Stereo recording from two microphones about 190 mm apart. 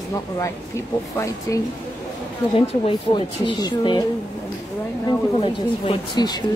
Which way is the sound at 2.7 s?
25° left (ahead or behind).